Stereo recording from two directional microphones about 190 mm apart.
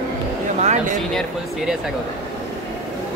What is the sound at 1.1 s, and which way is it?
Speech, centre (ahead or behind).